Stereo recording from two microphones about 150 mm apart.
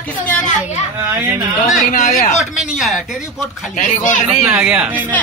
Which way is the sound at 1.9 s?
55° left (ahead or behind).